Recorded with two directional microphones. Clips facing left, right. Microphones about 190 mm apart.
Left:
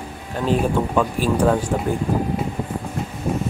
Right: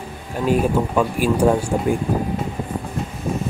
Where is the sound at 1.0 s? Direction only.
10° right (ahead or behind).